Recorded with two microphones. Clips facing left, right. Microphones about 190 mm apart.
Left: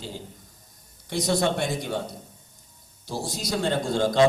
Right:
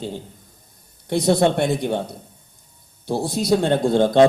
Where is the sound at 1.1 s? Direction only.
60° right (ahead or behind).